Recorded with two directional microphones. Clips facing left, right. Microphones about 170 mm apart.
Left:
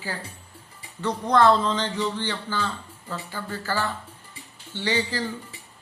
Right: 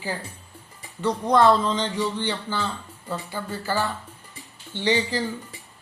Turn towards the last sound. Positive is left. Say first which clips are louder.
# right 3 dB
turn(degrees=-20)  # may be behind; listen again after turning